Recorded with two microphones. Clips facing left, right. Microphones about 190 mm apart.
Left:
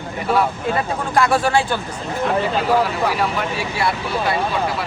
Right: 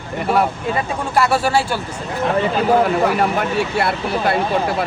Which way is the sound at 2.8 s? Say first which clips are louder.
Right 4 dB; 50° right (ahead or behind).